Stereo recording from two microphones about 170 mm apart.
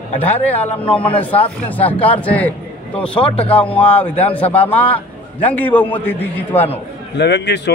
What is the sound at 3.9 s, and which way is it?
A man's voice, 10° left (ahead or behind).